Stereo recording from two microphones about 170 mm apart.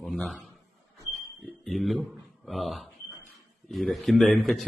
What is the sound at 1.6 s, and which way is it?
A man's voice, centre (ahead or behind).